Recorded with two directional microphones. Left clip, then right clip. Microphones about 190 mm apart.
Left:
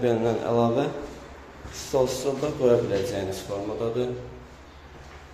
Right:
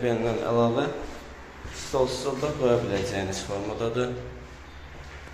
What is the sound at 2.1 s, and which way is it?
Speech, 35° left (ahead or behind).